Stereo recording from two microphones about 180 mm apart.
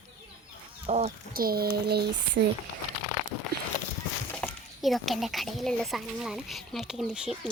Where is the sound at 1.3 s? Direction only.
55° right (ahead or behind).